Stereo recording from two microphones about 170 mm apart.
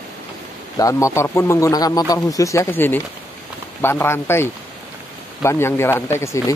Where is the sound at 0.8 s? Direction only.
20° left (ahead or behind).